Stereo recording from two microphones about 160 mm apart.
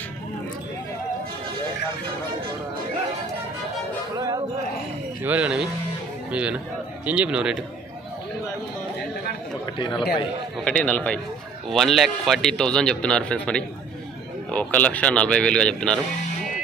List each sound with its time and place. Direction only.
5.2 s speech: 10° right (ahead or behind)
9.8 s speech: 30° left (ahead or behind)
10.6 s a man's voice: 10° left (ahead or behind)